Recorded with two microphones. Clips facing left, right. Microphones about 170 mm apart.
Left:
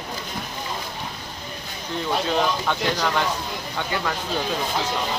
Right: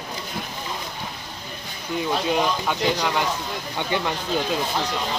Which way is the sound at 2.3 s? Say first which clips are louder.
Even; 10° right (ahead or behind).